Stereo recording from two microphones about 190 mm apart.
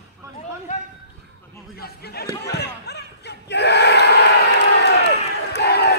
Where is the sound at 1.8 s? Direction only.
55° left (ahead or behind).